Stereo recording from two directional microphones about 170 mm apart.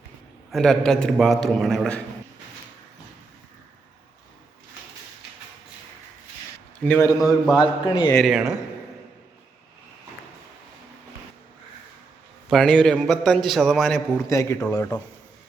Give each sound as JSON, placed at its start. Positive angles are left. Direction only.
{"t": 0.5, "sound": "a man's voice", "side_deg": 5}
{"t": 6.7, "sound": "a man's voice", "side_deg": 10}
{"t": 7.2, "sound": "a man's voice", "side_deg": 0}
{"t": 7.6, "sound": "a man's voice", "side_deg": 30}
{"t": 8.1, "sound": "a man's voice", "side_deg": 0}
{"t": 12.5, "sound": "a man's voice", "side_deg": 5}
{"t": 14.3, "sound": "speech", "side_deg": 20}